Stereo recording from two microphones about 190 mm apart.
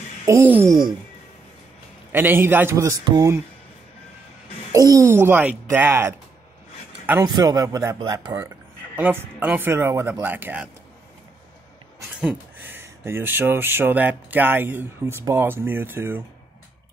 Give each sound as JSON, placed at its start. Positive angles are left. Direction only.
{"t": 0.2, "sound": "speech", "side_deg": -15}
{"t": 2.1, "sound": "speech", "side_deg": -10}
{"t": 4.7, "sound": "speech", "side_deg": -20}
{"t": 12.2, "sound": "speech", "side_deg": -10}